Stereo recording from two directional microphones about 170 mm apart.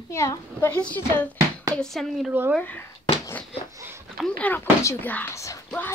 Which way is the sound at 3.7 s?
15° right (ahead or behind).